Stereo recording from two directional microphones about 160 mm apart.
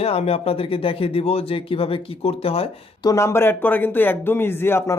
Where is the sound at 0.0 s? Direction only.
40° left (ahead or behind).